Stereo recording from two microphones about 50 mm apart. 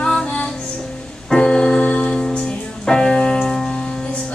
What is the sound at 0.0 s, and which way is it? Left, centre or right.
Female singing, centre.